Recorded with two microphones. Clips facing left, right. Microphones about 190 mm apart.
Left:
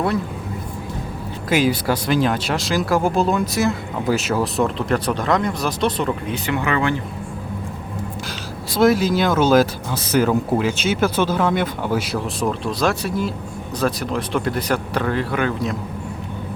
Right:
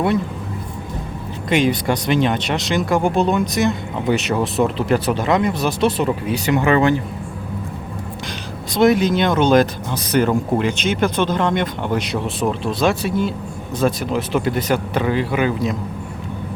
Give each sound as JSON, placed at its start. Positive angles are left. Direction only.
{"t": 1.5, "sound": "speech", "side_deg": 5}
{"t": 6.6, "sound": "speech", "side_deg": -30}
{"t": 8.7, "sound": "speech", "side_deg": 0}